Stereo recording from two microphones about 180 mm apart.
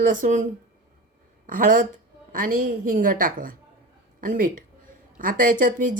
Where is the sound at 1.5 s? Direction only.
50° right (ahead or behind).